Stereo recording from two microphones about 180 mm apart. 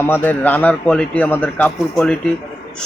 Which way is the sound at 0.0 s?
10° left (ahead or behind).